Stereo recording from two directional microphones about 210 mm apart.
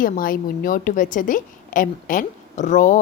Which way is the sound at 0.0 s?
45° left (ahead or behind).